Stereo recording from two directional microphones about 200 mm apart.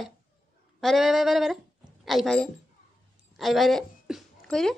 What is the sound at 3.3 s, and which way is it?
Speech, centre (ahead or behind).